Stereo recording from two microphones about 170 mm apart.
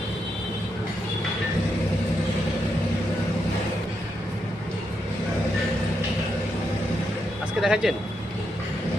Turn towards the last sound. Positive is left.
turn(degrees=0)  # may be behind; listen again after turning